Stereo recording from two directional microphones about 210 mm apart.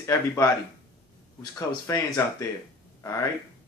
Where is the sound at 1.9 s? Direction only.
15° left (ahead or behind).